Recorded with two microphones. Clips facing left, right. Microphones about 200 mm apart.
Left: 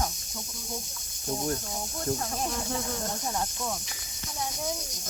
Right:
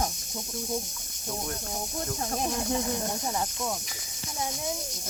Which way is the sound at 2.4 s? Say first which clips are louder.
Right 4 dB; 15° right (ahead or behind).